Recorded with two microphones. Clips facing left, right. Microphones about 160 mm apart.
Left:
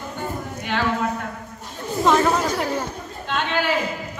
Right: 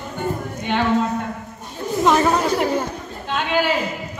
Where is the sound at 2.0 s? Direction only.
5° right (ahead or behind).